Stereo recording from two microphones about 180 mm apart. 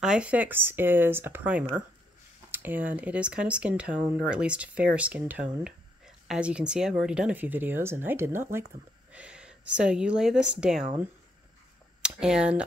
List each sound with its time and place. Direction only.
0.0 s speech: 5° right (ahead or behind)
2.5 s a sound: 10° right (ahead or behind)
3.0 s speech: 5° right (ahead or behind)
12.0 s speech: 5° right (ahead or behind)